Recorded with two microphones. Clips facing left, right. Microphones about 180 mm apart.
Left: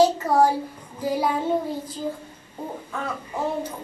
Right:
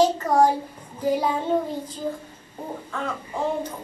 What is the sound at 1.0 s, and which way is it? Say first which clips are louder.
Speech: right 1 dB; 10° left (ahead or behind).